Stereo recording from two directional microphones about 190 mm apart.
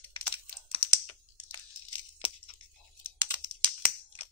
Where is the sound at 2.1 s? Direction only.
30° left (ahead or behind).